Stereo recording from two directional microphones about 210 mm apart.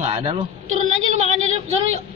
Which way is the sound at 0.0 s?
30° right (ahead or behind).